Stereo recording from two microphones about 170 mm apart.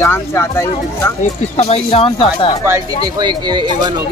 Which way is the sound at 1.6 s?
35° left (ahead or behind).